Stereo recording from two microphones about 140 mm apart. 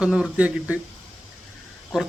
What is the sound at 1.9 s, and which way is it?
Speech, 5° right (ahead or behind).